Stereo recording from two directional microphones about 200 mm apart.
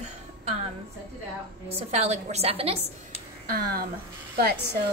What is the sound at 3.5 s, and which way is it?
Speech, 50° right (ahead or behind).